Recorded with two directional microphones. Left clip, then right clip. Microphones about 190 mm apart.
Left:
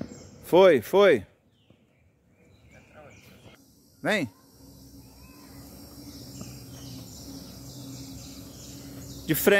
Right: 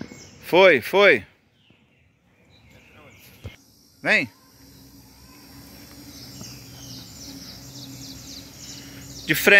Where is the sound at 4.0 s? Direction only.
15° left (ahead or behind).